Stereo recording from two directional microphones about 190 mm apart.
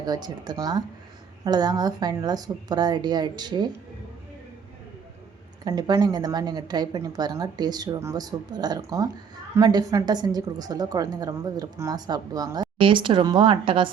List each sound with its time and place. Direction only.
0.0 s a woman's voice: 20° right (ahead or behind)
5.6 s a woman's voice: 20° right (ahead or behind)